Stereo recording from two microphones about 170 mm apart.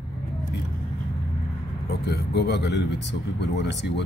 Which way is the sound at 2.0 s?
75° left (ahead or behind).